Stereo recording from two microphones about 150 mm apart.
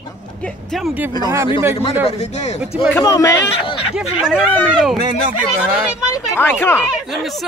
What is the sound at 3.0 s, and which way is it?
Speech, 20° left (ahead or behind).